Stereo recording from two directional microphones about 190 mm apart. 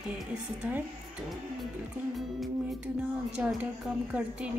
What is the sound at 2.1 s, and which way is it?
Speech, centre (ahead or behind).